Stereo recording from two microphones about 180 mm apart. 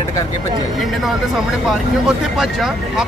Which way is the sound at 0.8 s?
Centre (ahead or behind).